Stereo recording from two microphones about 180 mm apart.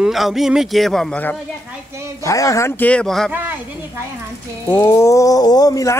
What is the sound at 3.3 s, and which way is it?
Speech, 10° right (ahead or behind).